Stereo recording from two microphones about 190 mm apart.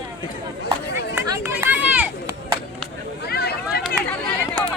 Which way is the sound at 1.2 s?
10° right (ahead or behind).